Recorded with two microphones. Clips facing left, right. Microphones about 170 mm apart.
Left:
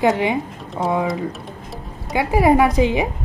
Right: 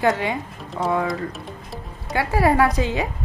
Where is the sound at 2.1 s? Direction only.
15° left (ahead or behind).